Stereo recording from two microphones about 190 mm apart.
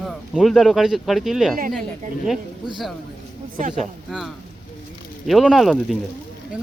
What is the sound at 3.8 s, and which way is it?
Speech, centre (ahead or behind).